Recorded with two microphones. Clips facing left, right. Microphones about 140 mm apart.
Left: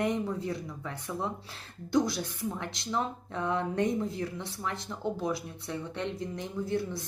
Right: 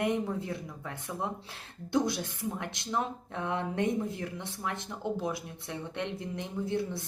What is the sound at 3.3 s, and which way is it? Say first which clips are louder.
Speech: left 2 dB; 20° right (ahead or behind).